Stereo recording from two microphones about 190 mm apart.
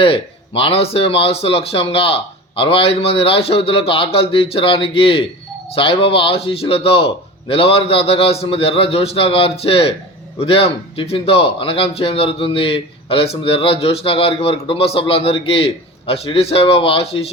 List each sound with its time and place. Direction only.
0.0 s speech: 30° left (ahead or behind)